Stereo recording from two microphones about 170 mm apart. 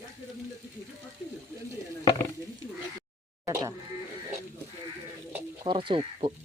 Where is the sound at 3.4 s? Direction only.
20° right (ahead or behind).